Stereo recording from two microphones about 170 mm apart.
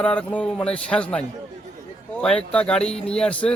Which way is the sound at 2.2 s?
5° left (ahead or behind).